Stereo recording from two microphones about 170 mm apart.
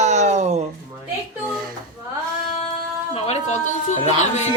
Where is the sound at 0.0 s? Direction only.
45° right (ahead or behind).